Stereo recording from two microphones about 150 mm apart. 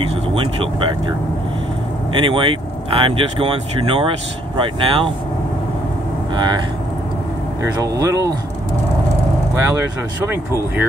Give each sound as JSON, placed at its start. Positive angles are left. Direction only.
{"t": 0.0, "sound": "speech", "side_deg": -40}
{"t": 2.1, "sound": "speech", "side_deg": -35}
{"t": 6.3, "sound": "speech", "side_deg": -30}
{"t": 7.6, "sound": "speech", "side_deg": -20}
{"t": 9.8, "sound": "speech", "side_deg": -15}